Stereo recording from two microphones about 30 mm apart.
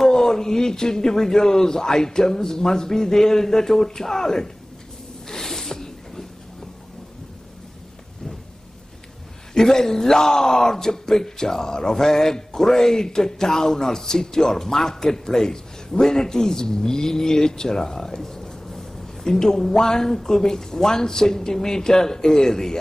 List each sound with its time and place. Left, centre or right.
0.0 s speech: centre
5.3 s zipper: centre
9.5 s speech: centre